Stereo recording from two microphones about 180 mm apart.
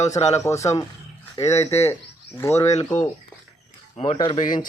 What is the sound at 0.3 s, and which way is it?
Speech, 15° left (ahead or behind).